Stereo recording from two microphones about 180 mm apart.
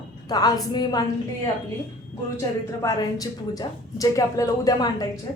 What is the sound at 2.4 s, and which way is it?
A woman's voice, 20° left (ahead or behind).